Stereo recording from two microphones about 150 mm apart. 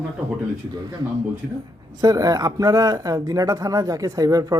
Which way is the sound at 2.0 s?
25° right (ahead or behind).